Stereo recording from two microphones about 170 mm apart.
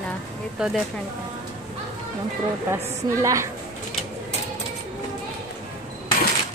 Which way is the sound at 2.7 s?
20° right (ahead or behind).